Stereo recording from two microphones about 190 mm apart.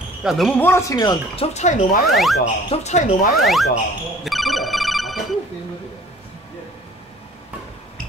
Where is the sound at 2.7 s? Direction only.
35° left (ahead or behind).